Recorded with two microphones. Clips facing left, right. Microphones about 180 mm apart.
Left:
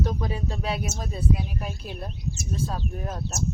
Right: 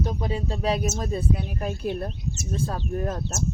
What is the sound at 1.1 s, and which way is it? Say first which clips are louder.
Speech: right 1 dB; 50° right (ahead or behind).